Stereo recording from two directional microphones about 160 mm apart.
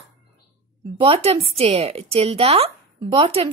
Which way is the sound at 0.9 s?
35° right (ahead or behind).